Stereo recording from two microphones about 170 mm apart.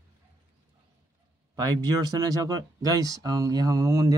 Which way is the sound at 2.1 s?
20° right (ahead or behind).